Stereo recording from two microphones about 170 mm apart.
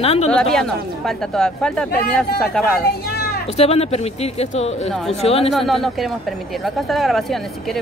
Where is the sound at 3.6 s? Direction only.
35° left (ahead or behind).